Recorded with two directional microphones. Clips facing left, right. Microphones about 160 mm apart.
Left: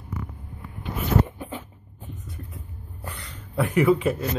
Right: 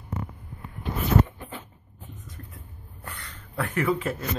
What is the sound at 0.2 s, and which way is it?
Vehicle, 25° right (ahead or behind).